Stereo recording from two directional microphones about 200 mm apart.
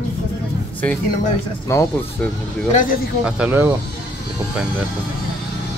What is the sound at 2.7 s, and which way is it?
Speech, 40° left (ahead or behind).